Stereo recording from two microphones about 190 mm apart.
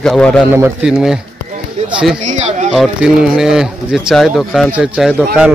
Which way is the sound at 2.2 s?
40° right (ahead or behind).